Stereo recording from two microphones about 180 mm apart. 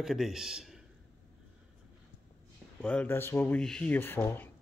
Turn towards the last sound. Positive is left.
turn(degrees=10)  # may be behind; listen again after turning